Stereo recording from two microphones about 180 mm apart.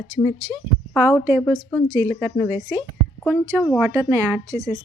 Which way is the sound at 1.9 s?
15° right (ahead or behind).